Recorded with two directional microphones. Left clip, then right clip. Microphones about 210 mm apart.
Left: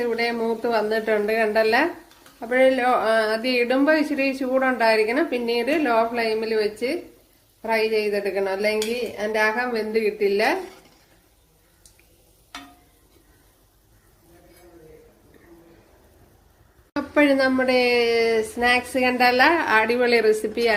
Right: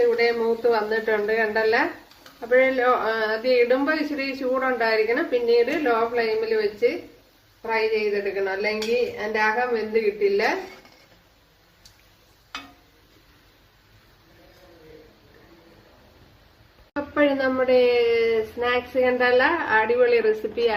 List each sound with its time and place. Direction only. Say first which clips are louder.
0.2 s speech: right 3 dB; 45° left (ahead or behind)
16.9 s speech: left 2 dB; 40° left (ahead or behind)